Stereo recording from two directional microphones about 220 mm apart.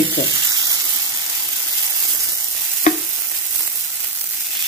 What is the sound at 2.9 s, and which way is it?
Stir, 35° left (ahead or behind).